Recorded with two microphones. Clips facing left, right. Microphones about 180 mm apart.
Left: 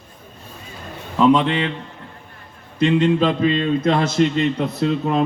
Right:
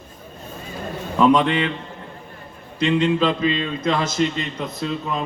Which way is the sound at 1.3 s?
30° left (ahead or behind).